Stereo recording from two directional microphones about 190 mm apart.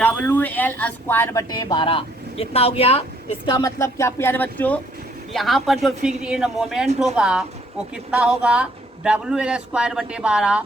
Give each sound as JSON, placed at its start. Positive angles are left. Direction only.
{"t": 0.0, "sound": "speech", "side_deg": 10}
{"t": 3.4, "sound": "speech", "side_deg": 20}